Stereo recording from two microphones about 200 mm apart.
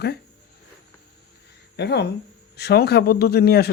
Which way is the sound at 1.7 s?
55° left (ahead or behind).